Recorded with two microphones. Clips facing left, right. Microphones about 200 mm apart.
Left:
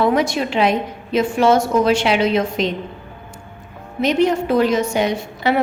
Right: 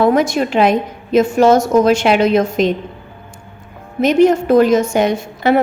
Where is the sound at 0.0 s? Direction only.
45° right (ahead or behind).